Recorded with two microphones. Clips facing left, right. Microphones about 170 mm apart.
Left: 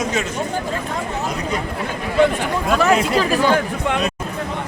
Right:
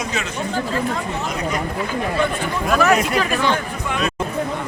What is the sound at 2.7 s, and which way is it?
Speech, 25° left (ahead or behind).